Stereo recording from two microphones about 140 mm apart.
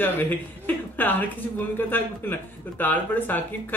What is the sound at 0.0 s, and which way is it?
Speech, 10° left (ahead or behind).